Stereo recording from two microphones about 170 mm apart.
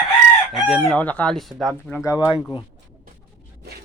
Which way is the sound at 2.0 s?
25° left (ahead or behind).